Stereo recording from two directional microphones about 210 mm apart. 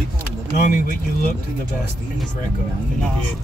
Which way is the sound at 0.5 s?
40° left (ahead or behind).